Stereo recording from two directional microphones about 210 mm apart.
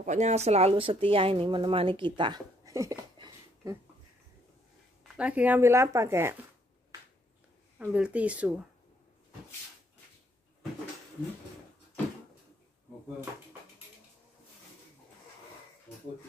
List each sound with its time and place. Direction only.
0.0 s speech: 35° right (ahead or behind); by 3.7 s 15° right (ahead or behind)
5.0 s speech: 5° right (ahead or behind)
7.8 s speech: 5° right (ahead or behind)